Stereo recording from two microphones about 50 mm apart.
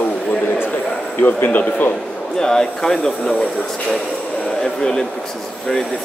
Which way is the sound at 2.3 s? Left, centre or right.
Centre.